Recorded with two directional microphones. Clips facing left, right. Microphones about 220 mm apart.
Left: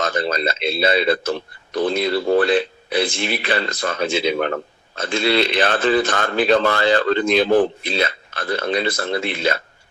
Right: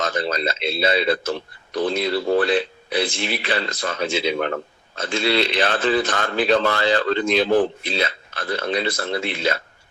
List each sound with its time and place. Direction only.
0.0 s a man's voice: 50° left (ahead or behind)